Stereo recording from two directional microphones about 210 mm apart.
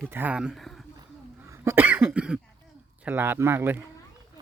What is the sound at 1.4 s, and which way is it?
Cough, 10° right (ahead or behind).